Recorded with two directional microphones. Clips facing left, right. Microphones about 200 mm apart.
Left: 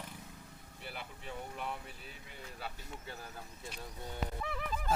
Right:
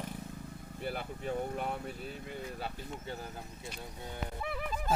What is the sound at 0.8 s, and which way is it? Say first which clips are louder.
Speech: right 9 dB; 45° right (ahead or behind).